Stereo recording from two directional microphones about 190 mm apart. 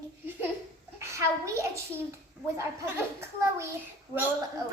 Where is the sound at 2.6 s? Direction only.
15° right (ahead or behind).